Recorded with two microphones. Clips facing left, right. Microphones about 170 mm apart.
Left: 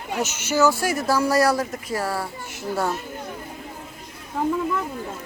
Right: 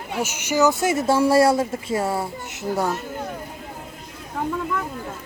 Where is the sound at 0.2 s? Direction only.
15° right (ahead or behind).